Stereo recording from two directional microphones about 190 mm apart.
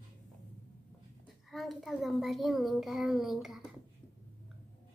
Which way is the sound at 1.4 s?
Centre (ahead or behind).